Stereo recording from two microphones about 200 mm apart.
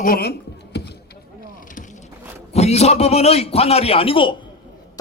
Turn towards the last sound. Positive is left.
turn(degrees=25)  # may be behind; listen again after turning